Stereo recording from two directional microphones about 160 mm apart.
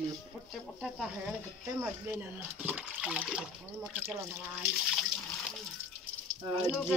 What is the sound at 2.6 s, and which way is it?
Speech, 10° right (ahead or behind).